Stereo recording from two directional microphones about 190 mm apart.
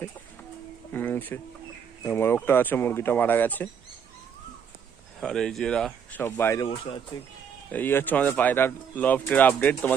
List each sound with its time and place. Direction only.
0.9 s speech: 10° left (ahead or behind)
5.2 s speech: centre (ahead or behind); by 7.3 s 20° left (ahead or behind)
7.7 s speech: 10° left (ahead or behind)